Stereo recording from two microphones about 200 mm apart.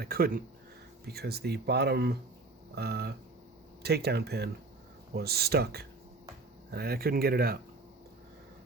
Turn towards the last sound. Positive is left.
turn(degrees=-50)  # may be behind; listen again after turning